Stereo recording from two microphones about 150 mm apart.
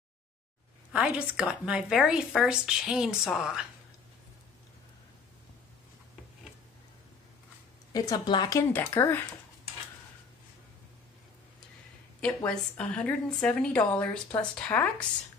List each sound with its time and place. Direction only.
0.9 s a woman's voice: 5° right (ahead or behind)
7.9 s a woman's voice: 25° left (ahead or behind)
8.7 s a woman's voice: 15° left (ahead or behind)
12.4 s a woman's voice: 5° left (ahead or behind)